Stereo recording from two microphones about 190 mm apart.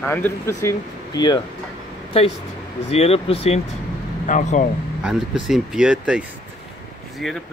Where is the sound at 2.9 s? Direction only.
30° left (ahead or behind).